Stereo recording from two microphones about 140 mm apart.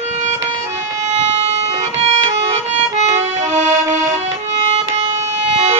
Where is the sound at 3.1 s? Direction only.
55° right (ahead or behind).